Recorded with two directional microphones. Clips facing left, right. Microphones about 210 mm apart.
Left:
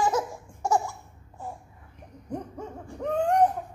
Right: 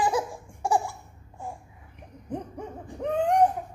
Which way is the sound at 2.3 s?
20° right (ahead or behind).